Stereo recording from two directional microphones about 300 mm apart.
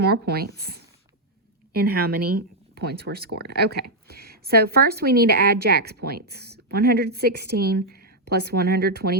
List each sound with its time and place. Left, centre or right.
0.0 s a woman's voice: right